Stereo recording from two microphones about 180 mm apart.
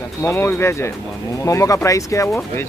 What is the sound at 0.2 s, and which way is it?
Speech, 10° left (ahead or behind).